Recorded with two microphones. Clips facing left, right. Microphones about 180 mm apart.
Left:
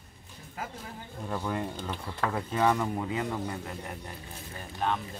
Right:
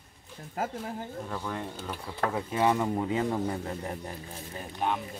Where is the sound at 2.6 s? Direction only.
20° right (ahead or behind).